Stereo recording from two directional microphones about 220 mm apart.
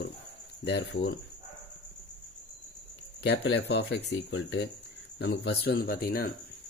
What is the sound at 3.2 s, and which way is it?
Speech, 50° left (ahead or behind).